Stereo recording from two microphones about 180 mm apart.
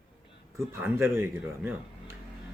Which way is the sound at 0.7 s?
10° right (ahead or behind).